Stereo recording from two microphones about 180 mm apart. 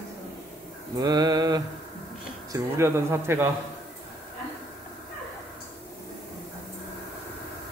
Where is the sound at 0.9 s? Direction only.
20° right (ahead or behind).